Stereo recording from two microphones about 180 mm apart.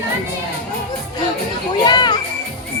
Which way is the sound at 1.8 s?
25° left (ahead or behind).